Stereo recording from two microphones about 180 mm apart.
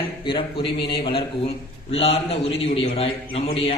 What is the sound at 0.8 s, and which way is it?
Speech, 65° left (ahead or behind).